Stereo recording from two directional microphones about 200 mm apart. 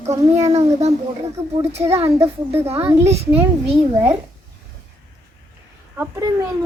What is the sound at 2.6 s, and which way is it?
Speech, 30° right (ahead or behind).